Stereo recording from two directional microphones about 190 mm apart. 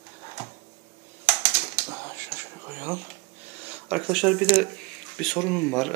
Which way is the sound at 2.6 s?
10° right (ahead or behind).